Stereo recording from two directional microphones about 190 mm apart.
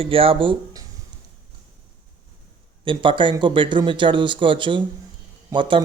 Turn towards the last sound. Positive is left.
turn(degrees=-25)  # may be behind; listen again after turning